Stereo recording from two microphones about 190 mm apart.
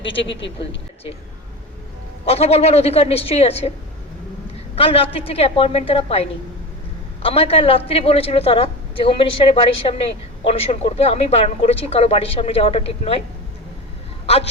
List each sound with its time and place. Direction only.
0.3 s speech: 70° left (ahead or behind)
2.2 s a woman's voice: 30° left (ahead or behind)